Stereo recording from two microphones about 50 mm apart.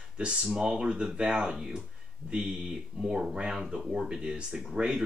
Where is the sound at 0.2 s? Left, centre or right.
Centre.